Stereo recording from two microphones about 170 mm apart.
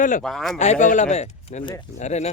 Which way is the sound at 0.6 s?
45° left (ahead or behind).